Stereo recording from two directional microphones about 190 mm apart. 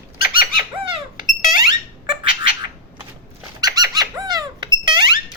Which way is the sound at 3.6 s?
20° right (ahead or behind).